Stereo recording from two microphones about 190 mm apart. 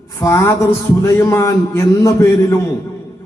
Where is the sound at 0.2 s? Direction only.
15° left (ahead or behind).